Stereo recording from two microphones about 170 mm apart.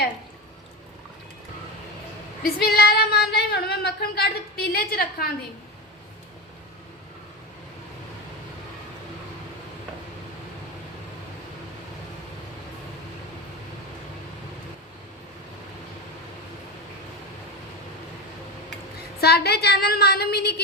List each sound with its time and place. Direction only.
2.4 s speech: 65° left (ahead or behind)
19.2 s speech: 70° left (ahead or behind)